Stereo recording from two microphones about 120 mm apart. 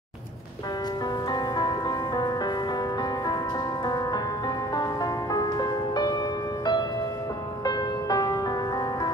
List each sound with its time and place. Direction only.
1.3 s music: 35° left (ahead or behind)